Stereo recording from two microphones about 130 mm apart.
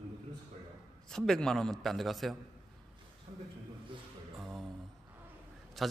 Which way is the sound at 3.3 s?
50° right (ahead or behind).